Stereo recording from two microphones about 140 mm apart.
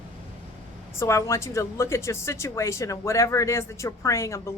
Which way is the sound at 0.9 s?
20° left (ahead or behind).